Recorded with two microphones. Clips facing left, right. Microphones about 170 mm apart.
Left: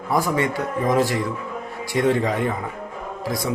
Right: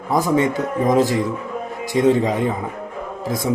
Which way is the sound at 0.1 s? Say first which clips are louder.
Right 4 dB; 20° right (ahead or behind).